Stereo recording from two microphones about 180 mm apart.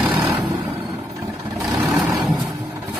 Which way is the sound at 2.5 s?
20° right (ahead or behind).